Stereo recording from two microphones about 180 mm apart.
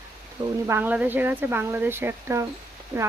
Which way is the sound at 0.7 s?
10° right (ahead or behind).